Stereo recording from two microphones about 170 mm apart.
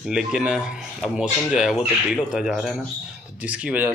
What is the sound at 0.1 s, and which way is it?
A man's voice, 5° right (ahead or behind).